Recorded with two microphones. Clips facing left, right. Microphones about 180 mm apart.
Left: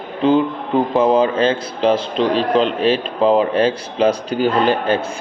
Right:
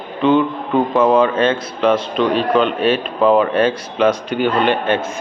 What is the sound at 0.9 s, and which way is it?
A man's voice, 30° left (ahead or behind).